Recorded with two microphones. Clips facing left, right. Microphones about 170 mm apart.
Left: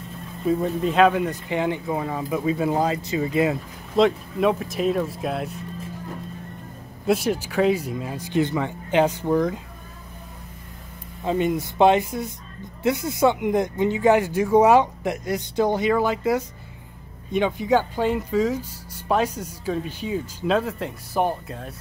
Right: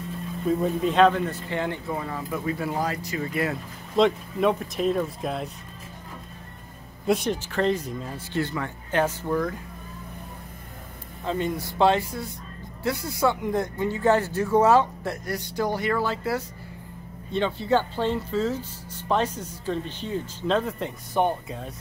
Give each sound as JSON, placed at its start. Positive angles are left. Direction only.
{"t": 0.5, "sound": "speech", "side_deg": 0}
{"t": 3.9, "sound": "speech", "side_deg": 0}
{"t": 7.1, "sound": "speech", "side_deg": 5}
{"t": 11.2, "sound": "speech", "side_deg": 15}